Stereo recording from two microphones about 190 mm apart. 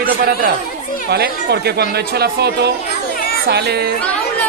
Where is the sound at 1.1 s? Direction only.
60° right (ahead or behind).